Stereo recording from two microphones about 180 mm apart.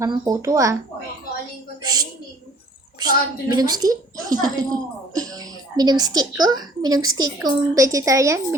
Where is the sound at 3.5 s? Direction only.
20° right (ahead or behind).